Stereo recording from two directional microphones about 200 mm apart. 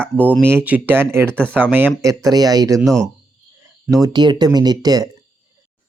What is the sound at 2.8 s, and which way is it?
Speech, centre (ahead or behind).